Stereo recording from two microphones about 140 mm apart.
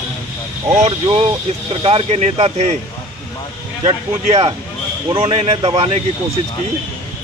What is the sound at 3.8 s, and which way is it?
Speech, 45° right (ahead or behind).